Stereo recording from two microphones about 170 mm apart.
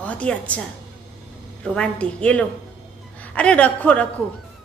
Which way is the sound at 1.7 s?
5° left (ahead or behind).